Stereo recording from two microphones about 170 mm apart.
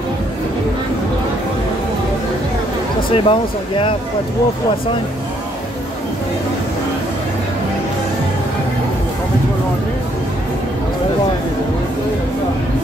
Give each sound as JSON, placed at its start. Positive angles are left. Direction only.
{"t": 3.1, "sound": "speech", "side_deg": 30}